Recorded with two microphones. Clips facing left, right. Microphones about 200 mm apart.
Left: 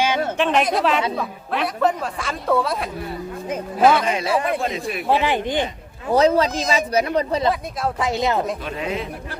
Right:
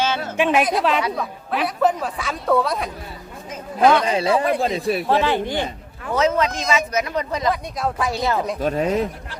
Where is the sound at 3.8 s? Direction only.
5° left (ahead or behind).